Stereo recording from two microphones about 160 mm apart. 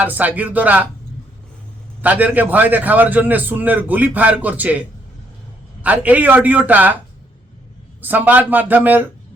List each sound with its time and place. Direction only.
0.0 s a man's voice: 10° right (ahead or behind)
2.0 s a man's voice: 10° right (ahead or behind)
5.8 s a man's voice: 10° right (ahead or behind)
8.0 s a man's voice: 10° right (ahead or behind)